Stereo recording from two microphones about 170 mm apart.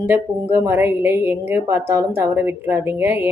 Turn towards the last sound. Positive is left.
turn(degrees=-15)  # may be behind; listen again after turning